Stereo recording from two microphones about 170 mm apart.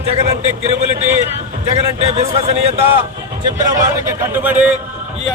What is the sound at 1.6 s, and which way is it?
A man's voice, 40° right (ahead or behind).